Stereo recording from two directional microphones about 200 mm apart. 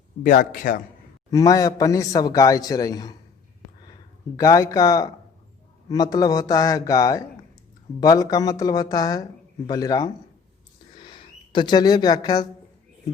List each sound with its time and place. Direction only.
0.2 s a man's voice: 45° left (ahead or behind)
1.3 s a man's voice: 15° left (ahead or behind)
4.4 s a man's voice: 15° left (ahead or behind)